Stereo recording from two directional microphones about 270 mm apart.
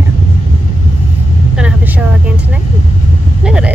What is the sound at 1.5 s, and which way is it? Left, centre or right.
Vehicle, centre.